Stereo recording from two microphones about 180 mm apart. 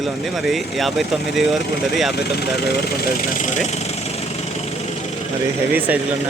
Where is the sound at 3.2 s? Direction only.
45° left (ahead or behind).